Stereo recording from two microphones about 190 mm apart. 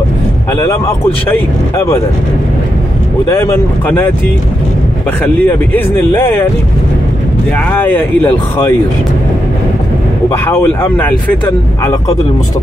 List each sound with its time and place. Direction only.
0.5 s speech: 15° left (ahead or behind)
3.3 s speech: 15° left (ahead or behind)
5.2 s speech: 10° left (ahead or behind)
7.5 s speech: 10° left (ahead or behind)
10.4 s speech: 10° left (ahead or behind)